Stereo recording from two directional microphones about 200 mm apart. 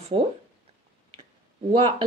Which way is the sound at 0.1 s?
30° right (ahead or behind).